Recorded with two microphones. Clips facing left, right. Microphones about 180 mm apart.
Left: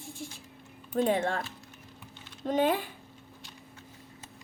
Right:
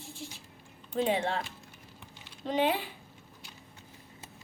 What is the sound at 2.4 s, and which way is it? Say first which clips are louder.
Speech: left 2 dB; 45° left (ahead or behind).